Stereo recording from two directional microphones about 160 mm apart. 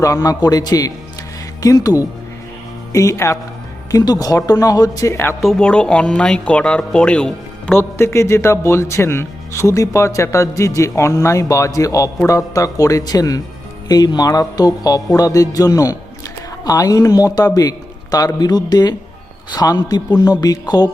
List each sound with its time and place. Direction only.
0.0 s a man's voice: 20° left (ahead or behind)
5.4 s a man's voice: 5° left (ahead or behind); by 20.9 s 25° left (ahead or behind)